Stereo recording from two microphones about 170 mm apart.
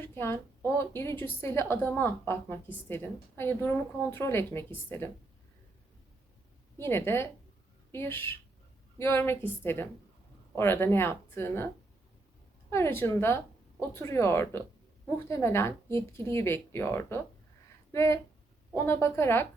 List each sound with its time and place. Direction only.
0.0 s a woman's voice: 15° left (ahead or behind)
6.7 s a woman's voice: 15° left (ahead or behind)
12.7 s a woman's voice: 15° left (ahead or behind)